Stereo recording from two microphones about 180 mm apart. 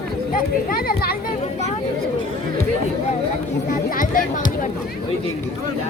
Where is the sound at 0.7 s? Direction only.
55° left (ahead or behind).